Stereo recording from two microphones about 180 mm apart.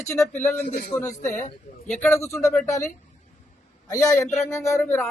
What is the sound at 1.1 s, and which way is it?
Speech, 45° left (ahead or behind).